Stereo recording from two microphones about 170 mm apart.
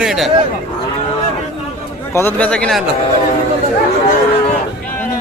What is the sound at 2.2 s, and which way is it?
Speech, 10° left (ahead or behind).